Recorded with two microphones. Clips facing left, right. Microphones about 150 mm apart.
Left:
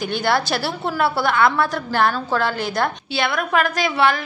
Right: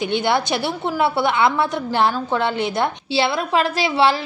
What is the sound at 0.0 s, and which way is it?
A woman's voice, 20° right (ahead or behind).